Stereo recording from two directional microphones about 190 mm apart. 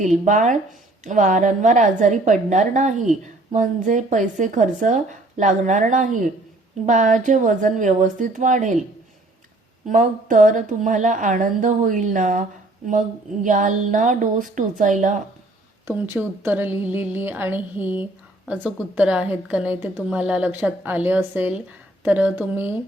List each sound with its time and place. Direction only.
0.3 s speech: 40° right (ahead or behind)
9.9 s a woman's voice: 40° right (ahead or behind)
15.9 s a woman's voice: 10° right (ahead or behind)